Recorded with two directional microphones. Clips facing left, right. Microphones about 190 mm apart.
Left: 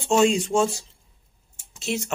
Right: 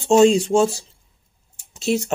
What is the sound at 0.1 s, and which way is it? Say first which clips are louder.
Speech: right 6 dB; 35° right (ahead or behind).